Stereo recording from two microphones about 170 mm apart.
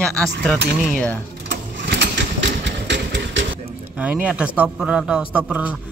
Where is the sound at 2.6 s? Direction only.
90° right.